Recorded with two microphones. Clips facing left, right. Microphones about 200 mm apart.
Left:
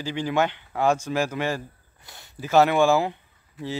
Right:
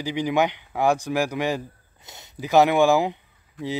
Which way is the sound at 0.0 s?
15° right (ahead or behind).